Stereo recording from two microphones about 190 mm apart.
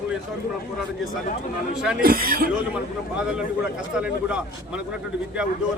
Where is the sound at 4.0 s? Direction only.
5° right (ahead or behind).